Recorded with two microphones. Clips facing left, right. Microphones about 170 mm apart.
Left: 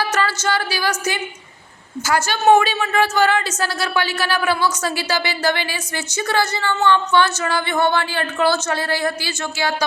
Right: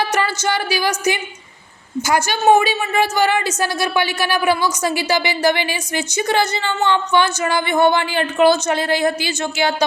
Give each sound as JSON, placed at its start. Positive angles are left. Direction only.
{"t": 0.1, "sound": "a woman's voice", "side_deg": -15}